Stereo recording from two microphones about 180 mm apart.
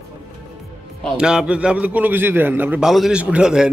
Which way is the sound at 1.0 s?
5° right (ahead or behind).